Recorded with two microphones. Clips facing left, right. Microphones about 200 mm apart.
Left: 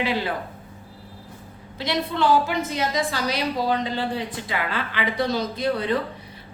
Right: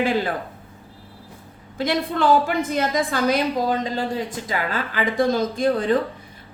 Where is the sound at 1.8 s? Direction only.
50° right (ahead or behind).